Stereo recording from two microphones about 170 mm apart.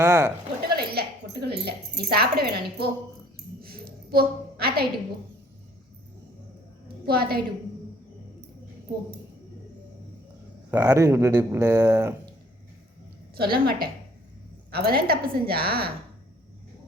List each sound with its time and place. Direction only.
0.0 s speech: 15° right (ahead or behind)
0.7 s a sound: 65° right (ahead or behind)
1.6 s speech: 65° right (ahead or behind)
3.6 s a sound: 60° right (ahead or behind)
7.0 s a woman's voice: 65° right (ahead or behind)
10.7 s speech: 10° right (ahead or behind)
13.3 s a woman's voice: 65° right (ahead or behind)